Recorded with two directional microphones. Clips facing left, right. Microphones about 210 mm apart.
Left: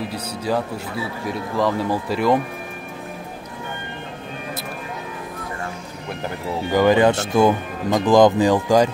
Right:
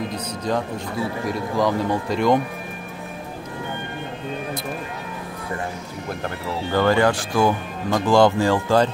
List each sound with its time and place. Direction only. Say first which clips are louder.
0.1 s speech: left 1 dB; 10° left (ahead or behind)
6.7 s speech: left 3 dB; 15° left (ahead or behind)